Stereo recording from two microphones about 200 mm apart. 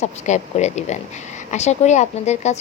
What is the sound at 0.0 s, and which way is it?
A woman's voice, 35° left (ahead or behind).